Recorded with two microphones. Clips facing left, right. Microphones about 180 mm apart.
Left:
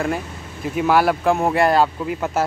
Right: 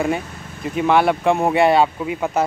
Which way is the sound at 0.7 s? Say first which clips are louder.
Right 1 dB; 5° left (ahead or behind).